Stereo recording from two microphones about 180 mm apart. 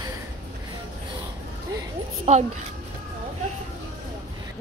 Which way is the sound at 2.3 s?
40° right (ahead or behind).